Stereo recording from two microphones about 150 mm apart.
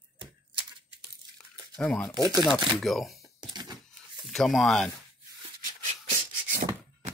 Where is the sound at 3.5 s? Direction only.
30° right (ahead or behind).